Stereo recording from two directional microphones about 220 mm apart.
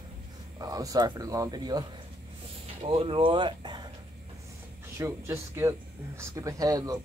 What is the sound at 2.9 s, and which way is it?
Speech, 25° right (ahead or behind).